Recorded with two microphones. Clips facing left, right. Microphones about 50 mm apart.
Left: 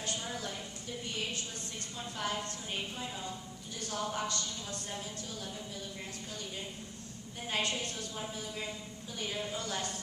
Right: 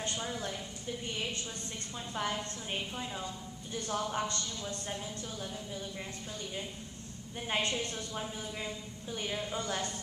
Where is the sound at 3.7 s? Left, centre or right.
Right.